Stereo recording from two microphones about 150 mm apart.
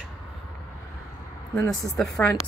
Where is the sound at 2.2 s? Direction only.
10° left (ahead or behind).